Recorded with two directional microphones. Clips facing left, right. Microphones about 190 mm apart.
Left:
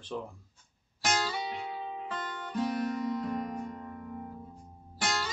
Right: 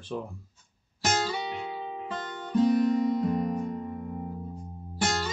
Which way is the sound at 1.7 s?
25° right (ahead or behind).